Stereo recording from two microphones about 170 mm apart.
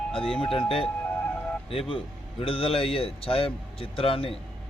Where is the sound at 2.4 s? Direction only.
30° left (ahead or behind).